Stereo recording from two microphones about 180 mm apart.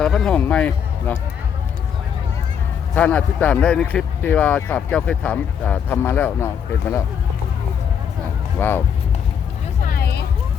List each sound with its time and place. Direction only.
0.0 s speech: 5° left (ahead or behind)
2.9 s speech: 10° left (ahead or behind)
8.5 s speech: 10° left (ahead or behind)
9.8 s vehicle: 55° left (ahead or behind)